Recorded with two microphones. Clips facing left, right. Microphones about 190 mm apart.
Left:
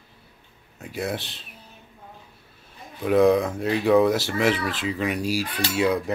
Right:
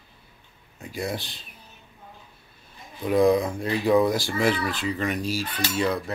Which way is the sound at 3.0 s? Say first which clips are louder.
Left 2 dB; 5° left (ahead or behind).